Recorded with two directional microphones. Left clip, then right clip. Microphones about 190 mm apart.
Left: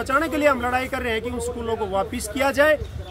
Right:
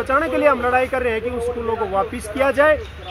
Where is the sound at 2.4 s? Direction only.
40° left (ahead or behind).